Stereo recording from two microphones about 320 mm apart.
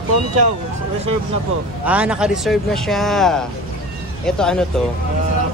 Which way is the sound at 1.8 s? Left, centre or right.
Centre.